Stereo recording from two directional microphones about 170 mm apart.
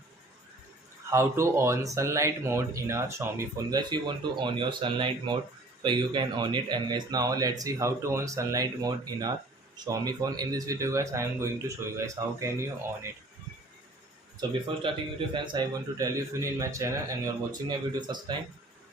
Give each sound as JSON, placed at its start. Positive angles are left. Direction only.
{"t": 1.1, "sound": "a man's voice", "side_deg": -15}
{"t": 14.4, "sound": "a man's voice", "side_deg": -30}